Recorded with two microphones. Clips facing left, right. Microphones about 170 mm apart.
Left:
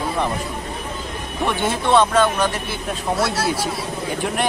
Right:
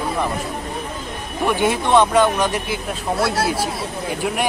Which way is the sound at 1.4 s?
10° right (ahead or behind).